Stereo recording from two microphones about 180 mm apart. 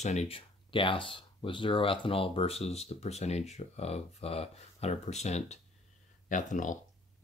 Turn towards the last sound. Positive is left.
turn(degrees=45)  # may be behind; listen again after turning